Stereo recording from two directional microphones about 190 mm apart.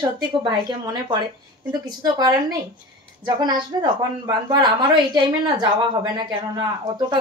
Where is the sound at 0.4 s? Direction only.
25° right (ahead or behind).